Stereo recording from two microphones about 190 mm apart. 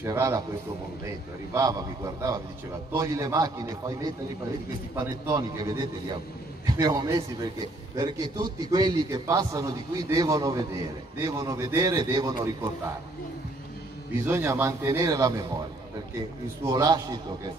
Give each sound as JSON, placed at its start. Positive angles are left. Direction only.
{"t": 0.0, "sound": "a man's voice", "side_deg": -15}
{"t": 14.2, "sound": "a man's voice", "side_deg": -10}
{"t": 16.6, "sound": "a man's voice", "side_deg": -20}